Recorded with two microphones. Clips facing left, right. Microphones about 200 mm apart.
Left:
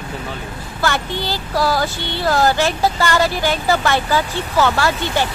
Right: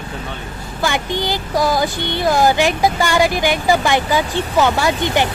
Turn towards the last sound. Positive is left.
turn(degrees=-15)  # may be behind; listen again after turning